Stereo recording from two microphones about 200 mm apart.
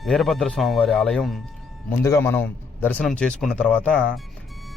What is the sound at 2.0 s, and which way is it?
A man's voice, 15° left (ahead or behind).